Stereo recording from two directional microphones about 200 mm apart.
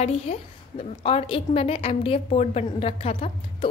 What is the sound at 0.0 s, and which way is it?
A woman's voice, 30° left (ahead or behind).